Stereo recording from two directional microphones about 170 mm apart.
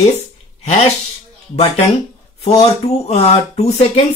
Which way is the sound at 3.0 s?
40° left (ahead or behind).